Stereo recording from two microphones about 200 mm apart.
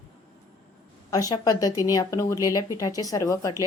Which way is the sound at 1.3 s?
20° left (ahead or behind).